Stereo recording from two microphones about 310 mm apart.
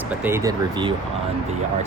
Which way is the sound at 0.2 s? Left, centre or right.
Centre.